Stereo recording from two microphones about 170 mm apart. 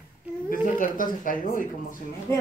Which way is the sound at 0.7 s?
55° left (ahead or behind).